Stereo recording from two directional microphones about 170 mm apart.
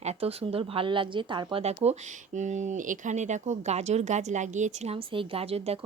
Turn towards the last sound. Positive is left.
turn(degrees=-35)  # may be behind; listen again after turning